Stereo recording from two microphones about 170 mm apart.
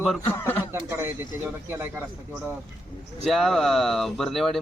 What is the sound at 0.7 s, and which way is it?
Speech, 15° right (ahead or behind).